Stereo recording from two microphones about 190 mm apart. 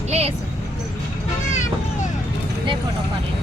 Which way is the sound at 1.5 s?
40° left (ahead or behind).